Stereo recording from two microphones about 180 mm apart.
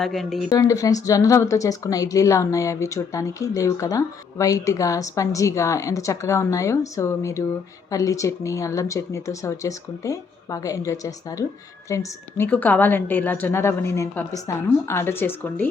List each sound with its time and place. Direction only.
0.0 s speech: centre (ahead or behind)
0.5 s speech: 20° left (ahead or behind)